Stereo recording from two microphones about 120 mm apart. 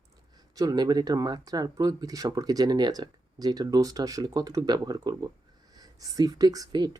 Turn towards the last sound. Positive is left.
turn(degrees=-35)  # may be behind; listen again after turning